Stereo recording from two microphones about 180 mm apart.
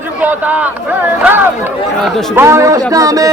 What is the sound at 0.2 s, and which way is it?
A man's voice, 10° right (ahead or behind).